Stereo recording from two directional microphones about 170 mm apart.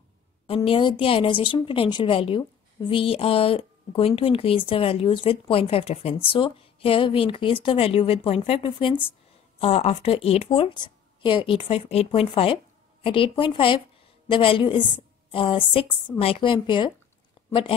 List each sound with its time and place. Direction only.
0.7 s a woman's voice: 30° left (ahead or behind)